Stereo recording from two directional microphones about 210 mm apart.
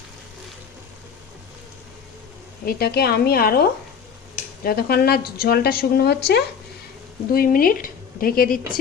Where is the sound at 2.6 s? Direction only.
45° left (ahead or behind).